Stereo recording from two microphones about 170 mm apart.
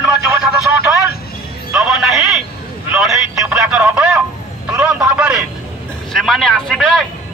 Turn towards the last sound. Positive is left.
turn(degrees=0)  # may be behind; listen again after turning